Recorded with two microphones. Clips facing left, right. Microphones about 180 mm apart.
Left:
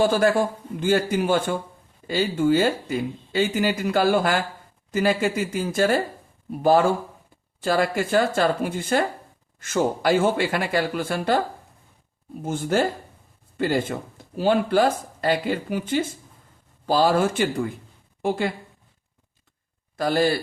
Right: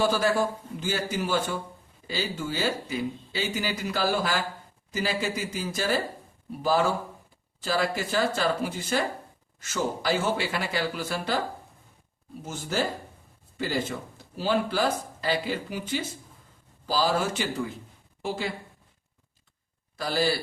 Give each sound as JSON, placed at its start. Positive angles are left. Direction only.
{"t": 0.0, "sound": "speech", "side_deg": 50}
{"t": 12.4, "sound": "a woman's voice", "side_deg": 55}
{"t": 20.0, "sound": "speech", "side_deg": 50}